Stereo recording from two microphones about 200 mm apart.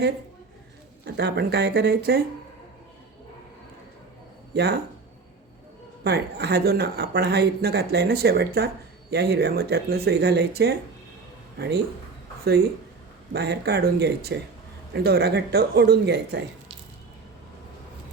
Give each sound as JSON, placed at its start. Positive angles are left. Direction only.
{"t": 1.0, "sound": "a woman's voice", "side_deg": -55}
{"t": 4.5, "sound": "a woman's voice", "side_deg": -55}
{"t": 6.0, "sound": "a woman's voice", "side_deg": -55}
{"t": 13.3, "sound": "speech", "side_deg": -55}